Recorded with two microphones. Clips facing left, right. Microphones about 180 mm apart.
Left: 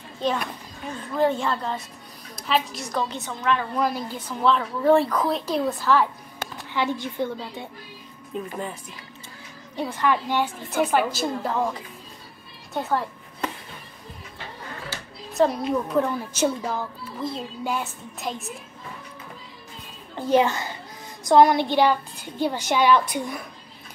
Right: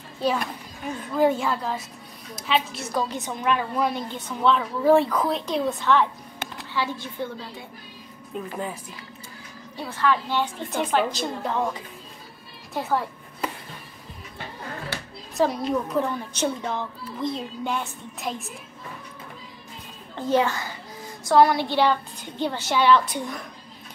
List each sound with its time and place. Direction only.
1.1 s a child's voice: 5° right (ahead or behind)
3.7 s a child's voice: centre (ahead or behind)
6.7 s a child's voice: 20° left (ahead or behind)
9.8 s a child's voice: 15° left (ahead or behind)
12.7 s a sound: centre (ahead or behind)
14.9 s a sound: 65° right (ahead or behind)
15.3 s a child's voice: centre (ahead or behind)
20.2 s a child's voice: 15° left (ahead or behind)